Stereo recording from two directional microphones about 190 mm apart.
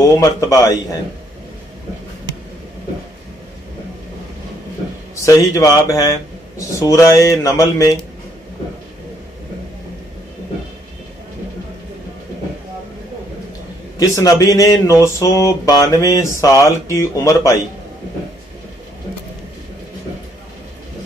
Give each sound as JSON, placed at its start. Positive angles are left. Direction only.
{"t": 0.0, "sound": "speech", "side_deg": 15}
{"t": 5.1, "sound": "speech", "side_deg": 15}
{"t": 13.9, "sound": "speech", "side_deg": 20}